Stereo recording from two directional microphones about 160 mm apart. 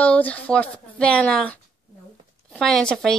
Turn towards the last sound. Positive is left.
turn(degrees=5)  # may be behind; listen again after turning